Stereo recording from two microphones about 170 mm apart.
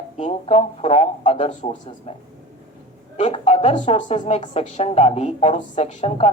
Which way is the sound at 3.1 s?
40° left (ahead or behind).